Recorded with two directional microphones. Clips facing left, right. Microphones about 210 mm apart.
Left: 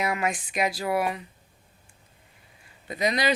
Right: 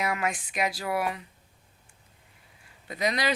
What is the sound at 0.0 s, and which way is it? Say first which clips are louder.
Speech: left 2 dB; 15° left (ahead or behind).